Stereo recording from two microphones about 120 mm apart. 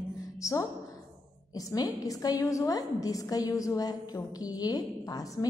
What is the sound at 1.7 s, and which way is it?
A woman's voice, 30° left (ahead or behind).